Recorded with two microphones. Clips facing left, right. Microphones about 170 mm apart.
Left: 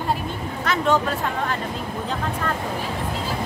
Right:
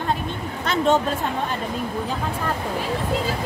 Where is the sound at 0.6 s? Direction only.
25° right (ahead or behind).